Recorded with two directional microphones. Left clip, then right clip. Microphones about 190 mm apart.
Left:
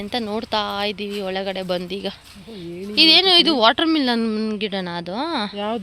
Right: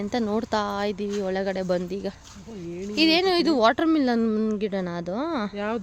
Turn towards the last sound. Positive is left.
turn(degrees=25)  # may be behind; listen again after turning